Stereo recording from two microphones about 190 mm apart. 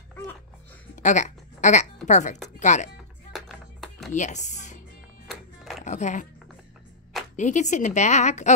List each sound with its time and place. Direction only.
0.9 s a sound: 40° left (ahead or behind)
2.6 s a woman's voice: 40° left (ahead or behind)
3.3 s music: centre (ahead or behind)
4.1 s speech: 40° left (ahead or behind)
5.3 s music: centre (ahead or behind)
5.9 s speech: 40° left (ahead or behind)
7.3 s a woman's voice: 40° left (ahead or behind)